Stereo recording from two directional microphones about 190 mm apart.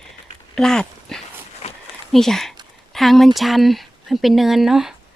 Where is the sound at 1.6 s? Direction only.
35° left (ahead or behind).